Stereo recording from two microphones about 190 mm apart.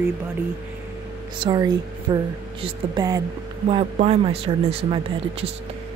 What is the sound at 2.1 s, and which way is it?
Speech, 25° right (ahead or behind).